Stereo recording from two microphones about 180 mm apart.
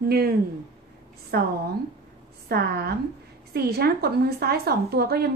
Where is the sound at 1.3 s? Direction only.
60° right (ahead or behind).